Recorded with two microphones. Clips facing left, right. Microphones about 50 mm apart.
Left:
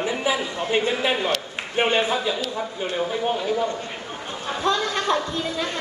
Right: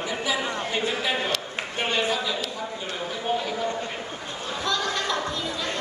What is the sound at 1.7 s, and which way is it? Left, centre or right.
Speech, left.